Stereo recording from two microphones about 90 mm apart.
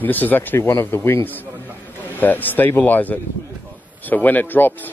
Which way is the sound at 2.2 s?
20° left (ahead or behind).